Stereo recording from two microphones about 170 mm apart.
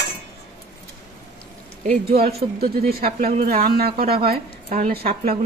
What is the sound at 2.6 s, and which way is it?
Speech, 65° right (ahead or behind).